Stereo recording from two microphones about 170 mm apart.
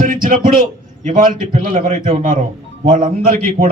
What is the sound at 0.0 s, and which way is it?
A man's voice, 55° right (ahead or behind).